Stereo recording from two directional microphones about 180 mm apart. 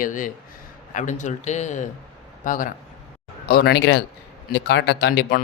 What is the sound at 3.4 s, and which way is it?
Speech, 60° left (ahead or behind).